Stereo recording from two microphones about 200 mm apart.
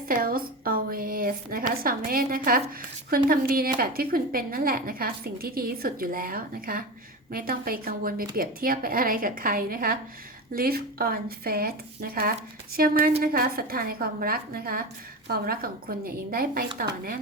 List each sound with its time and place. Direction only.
0.1 s a woman's voice: 45° right (ahead or behind)